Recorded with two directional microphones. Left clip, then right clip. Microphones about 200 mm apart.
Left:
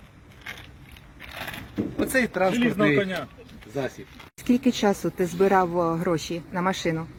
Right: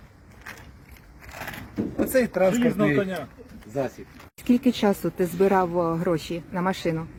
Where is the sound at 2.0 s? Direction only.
40° right (ahead or behind).